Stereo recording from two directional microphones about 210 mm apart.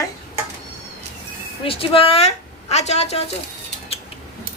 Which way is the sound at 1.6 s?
25° left (ahead or behind).